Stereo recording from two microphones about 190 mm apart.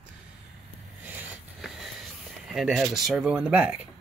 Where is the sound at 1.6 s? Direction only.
Centre (ahead or behind).